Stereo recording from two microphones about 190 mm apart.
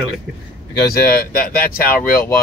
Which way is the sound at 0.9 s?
50° left (ahead or behind).